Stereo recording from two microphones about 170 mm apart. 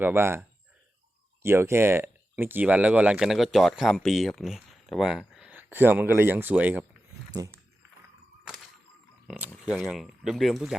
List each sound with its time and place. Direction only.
0.0 s speech: 15° right (ahead or behind)
7.3 s speech: 20° right (ahead or behind)
9.6 s speech: 5° right (ahead or behind)